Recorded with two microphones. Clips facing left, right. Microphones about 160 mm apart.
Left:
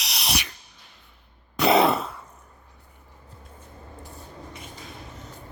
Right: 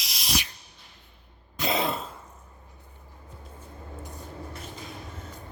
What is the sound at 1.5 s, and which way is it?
Throat clearing, 75° left (ahead or behind).